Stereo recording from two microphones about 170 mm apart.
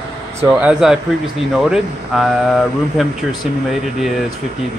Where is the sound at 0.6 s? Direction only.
5° right (ahead or behind).